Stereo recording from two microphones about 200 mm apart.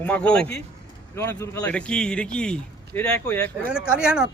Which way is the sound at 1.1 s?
15° left (ahead or behind).